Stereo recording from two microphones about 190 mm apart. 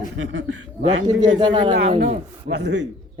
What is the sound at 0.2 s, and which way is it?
Speech, 75° right (ahead or behind).